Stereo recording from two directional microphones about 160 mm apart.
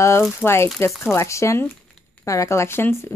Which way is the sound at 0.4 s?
15° left (ahead or behind).